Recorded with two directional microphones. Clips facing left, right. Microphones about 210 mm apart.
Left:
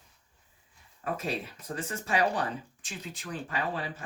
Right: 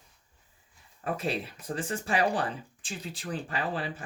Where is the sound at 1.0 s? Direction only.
30° right (ahead or behind).